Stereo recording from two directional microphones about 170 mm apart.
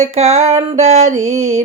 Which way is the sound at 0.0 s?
40° right (ahead or behind).